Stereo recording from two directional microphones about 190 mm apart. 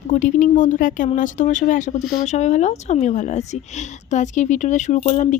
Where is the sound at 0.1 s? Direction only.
45° left (ahead or behind).